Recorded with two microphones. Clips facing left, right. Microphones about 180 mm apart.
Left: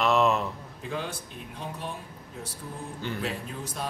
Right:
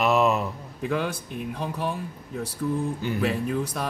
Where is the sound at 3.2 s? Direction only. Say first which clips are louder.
Right 9 dB; 65° right (ahead or behind).